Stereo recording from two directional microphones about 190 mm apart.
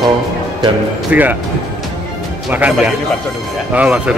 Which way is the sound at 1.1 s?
5° right (ahead or behind).